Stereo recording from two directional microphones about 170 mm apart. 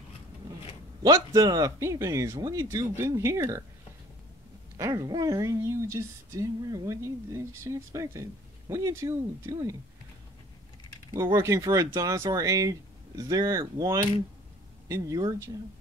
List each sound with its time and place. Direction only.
1.0 s speech: 20° right (ahead or behind)
4.7 s speech: 20° right (ahead or behind)
11.3 s speech: 15° right (ahead or behind)